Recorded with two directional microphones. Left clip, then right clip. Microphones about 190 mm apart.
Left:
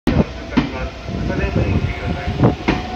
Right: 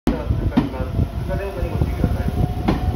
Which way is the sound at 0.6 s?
55° right (ahead or behind).